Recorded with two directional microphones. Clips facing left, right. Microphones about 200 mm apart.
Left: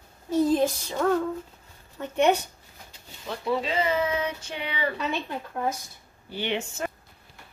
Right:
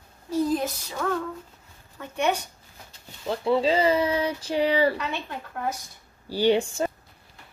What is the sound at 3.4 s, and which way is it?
Speech, 30° right (ahead or behind).